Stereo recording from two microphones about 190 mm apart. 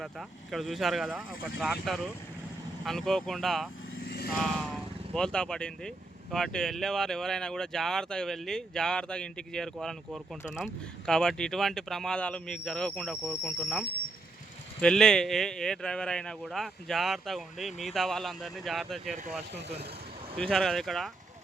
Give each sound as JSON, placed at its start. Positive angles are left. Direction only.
{"t": 0.0, "sound": "speech", "side_deg": 0}
{"t": 3.9, "sound": "vehicle", "side_deg": 50}
{"t": 5.1, "sound": "speech", "side_deg": 5}
{"t": 19.1, "sound": "speech", "side_deg": -35}
{"t": 20.4, "sound": "speech", "side_deg": 0}